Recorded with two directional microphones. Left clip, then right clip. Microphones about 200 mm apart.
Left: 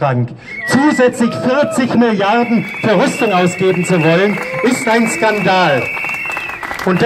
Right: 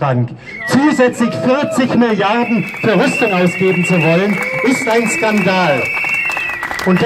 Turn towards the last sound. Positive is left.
turn(degrees=45)  # may be behind; listen again after turning